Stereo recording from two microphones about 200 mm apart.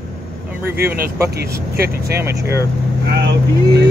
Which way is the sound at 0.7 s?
50° right (ahead or behind).